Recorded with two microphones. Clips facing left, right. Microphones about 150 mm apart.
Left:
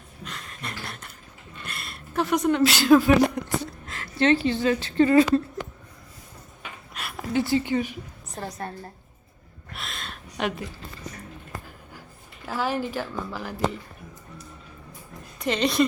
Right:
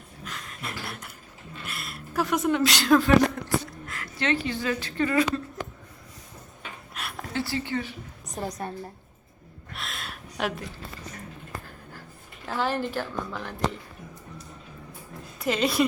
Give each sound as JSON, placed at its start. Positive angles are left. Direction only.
{"t": 0.3, "sound": "a sound", "side_deg": 0}
{"t": 3.4, "sound": "a woman's voice", "side_deg": 15}
{"t": 3.8, "sound": "a woman's voice", "side_deg": 30}
{"t": 6.9, "sound": "a sound", "side_deg": 0}
{"t": 7.3, "sound": "a woman's voice", "side_deg": 20}
{"t": 8.4, "sound": "a woman's voice", "side_deg": -15}
{"t": 9.7, "sound": "a sound", "side_deg": 0}
{"t": 12.5, "sound": "a woman's voice", "side_deg": 10}
{"t": 15.4, "sound": "a woman's voice", "side_deg": -5}